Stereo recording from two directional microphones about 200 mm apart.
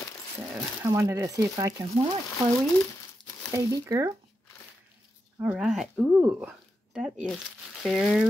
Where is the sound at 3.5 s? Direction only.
15° right (ahead or behind).